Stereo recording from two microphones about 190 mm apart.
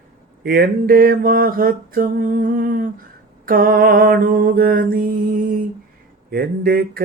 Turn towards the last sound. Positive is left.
turn(degrees=-55)  # may be behind; listen again after turning